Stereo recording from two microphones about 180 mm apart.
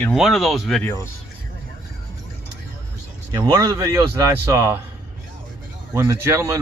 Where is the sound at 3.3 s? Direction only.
20° right (ahead or behind).